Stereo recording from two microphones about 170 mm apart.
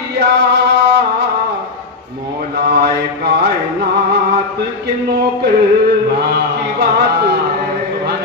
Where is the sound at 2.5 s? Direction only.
70° right (ahead or behind).